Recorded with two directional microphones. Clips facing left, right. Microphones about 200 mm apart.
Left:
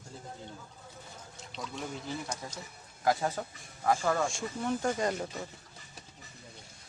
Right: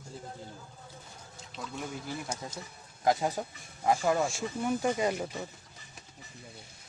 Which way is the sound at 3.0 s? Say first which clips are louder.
Right 1 dB; 20° right (ahead or behind).